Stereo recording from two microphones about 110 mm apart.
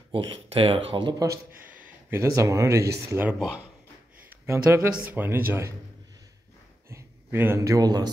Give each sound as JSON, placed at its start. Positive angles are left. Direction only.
{"t": 0.1, "sound": "speech", "side_deg": -55}
{"t": 1.7, "sound": "speech", "side_deg": -15}
{"t": 3.3, "sound": "speech", "side_deg": -10}
{"t": 4.5, "sound": "speech", "side_deg": -25}
{"t": 4.9, "sound": "speech", "side_deg": -15}
{"t": 6.9, "sound": "speech", "side_deg": -20}